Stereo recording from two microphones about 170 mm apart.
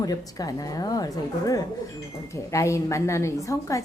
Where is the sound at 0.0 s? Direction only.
20° left (ahead or behind).